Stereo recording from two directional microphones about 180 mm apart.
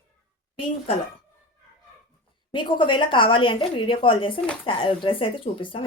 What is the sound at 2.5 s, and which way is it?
Speech, 25° left (ahead or behind).